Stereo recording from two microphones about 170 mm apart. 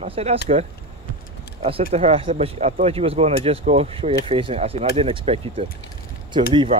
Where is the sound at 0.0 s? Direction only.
35° right (ahead or behind).